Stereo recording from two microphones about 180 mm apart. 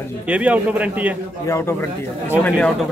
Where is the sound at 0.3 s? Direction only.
5° right (ahead or behind).